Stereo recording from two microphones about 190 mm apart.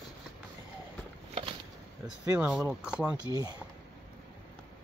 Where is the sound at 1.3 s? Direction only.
30° right (ahead or behind).